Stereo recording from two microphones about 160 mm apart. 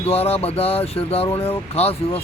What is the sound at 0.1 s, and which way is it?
Speech, 40° left (ahead or behind).